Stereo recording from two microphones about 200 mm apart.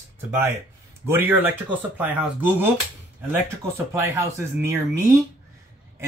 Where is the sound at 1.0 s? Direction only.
10° right (ahead or behind).